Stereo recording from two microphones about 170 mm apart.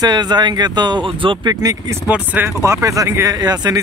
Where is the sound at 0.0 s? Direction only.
25° right (ahead or behind).